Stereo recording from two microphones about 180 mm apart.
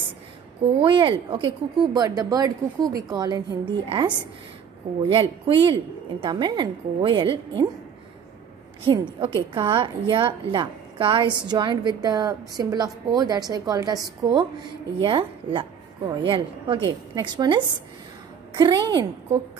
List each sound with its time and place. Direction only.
0.7 s a woman's voice: 30° right (ahead or behind)
8.8 s a woman's voice: 25° right (ahead or behind)